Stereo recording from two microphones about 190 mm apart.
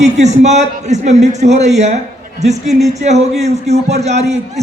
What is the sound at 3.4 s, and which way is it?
Speech, 35° right (ahead or behind).